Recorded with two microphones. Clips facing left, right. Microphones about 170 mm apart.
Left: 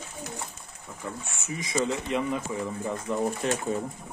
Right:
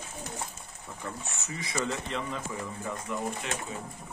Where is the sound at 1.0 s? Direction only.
10° left (ahead or behind).